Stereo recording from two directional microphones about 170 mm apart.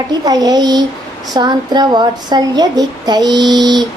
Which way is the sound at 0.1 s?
25° right (ahead or behind).